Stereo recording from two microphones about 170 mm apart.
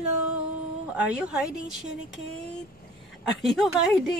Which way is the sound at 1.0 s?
5° right (ahead or behind).